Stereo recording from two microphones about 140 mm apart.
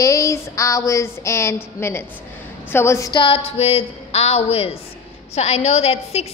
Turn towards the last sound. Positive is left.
turn(degrees=50)  # may be behind; listen again after turning